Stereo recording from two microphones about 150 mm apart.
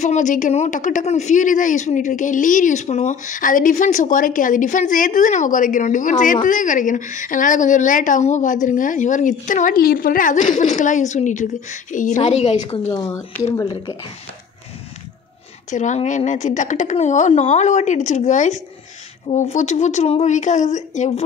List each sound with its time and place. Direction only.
0.0 s speech: 55° left (ahead or behind)
12.9 s speech: 25° left (ahead or behind)
15.7 s a woman's voice: 55° left (ahead or behind)